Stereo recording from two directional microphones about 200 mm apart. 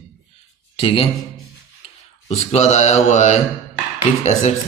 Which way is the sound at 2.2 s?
35° left (ahead or behind).